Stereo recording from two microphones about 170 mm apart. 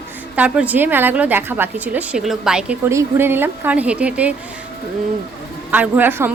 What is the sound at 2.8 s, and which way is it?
A woman's voice, 15° right (ahead or behind).